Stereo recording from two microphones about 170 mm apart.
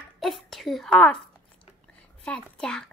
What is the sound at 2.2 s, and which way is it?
Speech, 5° left (ahead or behind).